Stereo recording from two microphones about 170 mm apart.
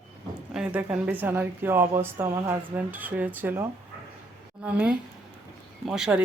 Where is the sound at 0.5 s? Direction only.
10° right (ahead or behind).